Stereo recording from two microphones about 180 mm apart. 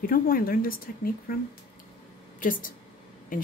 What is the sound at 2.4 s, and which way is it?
Speech, 50° left (ahead or behind).